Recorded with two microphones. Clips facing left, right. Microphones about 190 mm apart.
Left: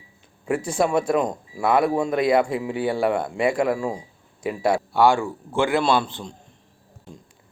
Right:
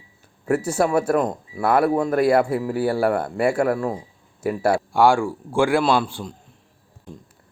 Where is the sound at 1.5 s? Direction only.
15° left (ahead or behind).